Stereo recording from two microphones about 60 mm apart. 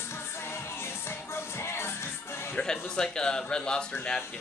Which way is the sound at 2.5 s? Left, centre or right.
Centre.